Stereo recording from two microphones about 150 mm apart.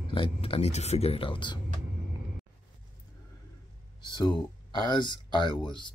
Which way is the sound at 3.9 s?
30° left (ahead or behind).